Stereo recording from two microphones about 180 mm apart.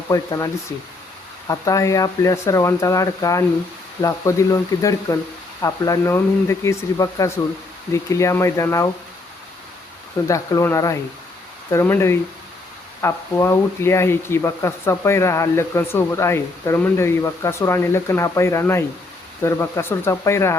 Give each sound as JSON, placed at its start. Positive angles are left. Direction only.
{"t": 0.1, "sound": "speech", "side_deg": 20}
{"t": 10.2, "sound": "speech", "side_deg": 15}